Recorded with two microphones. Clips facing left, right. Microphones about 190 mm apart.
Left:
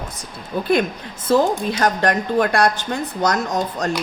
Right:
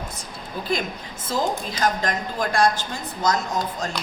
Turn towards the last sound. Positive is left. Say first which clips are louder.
# left 4 dB
turn(degrees=65)  # may be behind; listen again after turning